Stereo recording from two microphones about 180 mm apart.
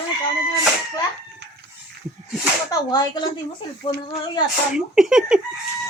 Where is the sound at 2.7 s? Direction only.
20° left (ahead or behind).